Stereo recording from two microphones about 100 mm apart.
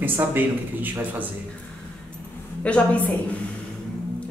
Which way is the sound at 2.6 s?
15° left (ahead or behind).